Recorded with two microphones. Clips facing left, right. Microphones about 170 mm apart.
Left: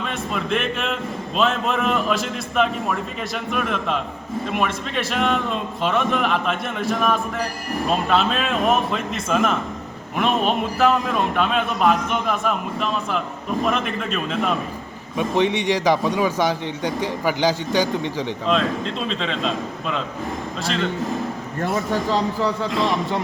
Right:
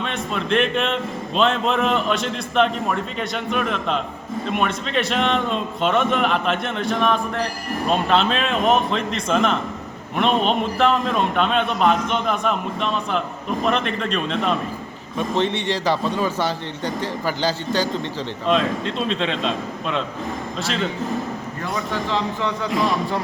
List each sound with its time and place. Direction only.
0.0 s a man's voice: 5° left (ahead or behind)
18.4 s a man's voice: centre (ahead or behind)
21.8 s speech: 40° left (ahead or behind)